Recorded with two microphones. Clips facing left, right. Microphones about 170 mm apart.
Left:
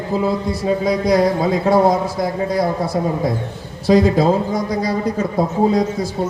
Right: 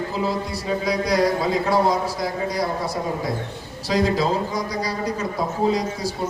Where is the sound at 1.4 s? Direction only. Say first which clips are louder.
Left 5 dB; 50° left (ahead or behind).